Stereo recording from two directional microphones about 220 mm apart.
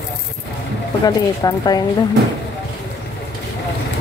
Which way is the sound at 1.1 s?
15° left (ahead or behind).